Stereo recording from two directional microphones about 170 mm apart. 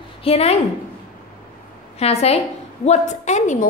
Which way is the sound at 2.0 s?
40° left (ahead or behind).